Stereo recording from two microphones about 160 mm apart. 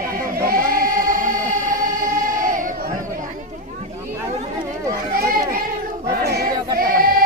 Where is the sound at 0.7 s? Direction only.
60° right (ahead or behind).